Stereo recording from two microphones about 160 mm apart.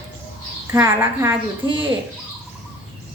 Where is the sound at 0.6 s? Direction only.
15° right (ahead or behind).